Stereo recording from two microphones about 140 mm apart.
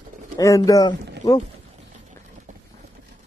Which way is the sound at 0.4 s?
25° left (ahead or behind).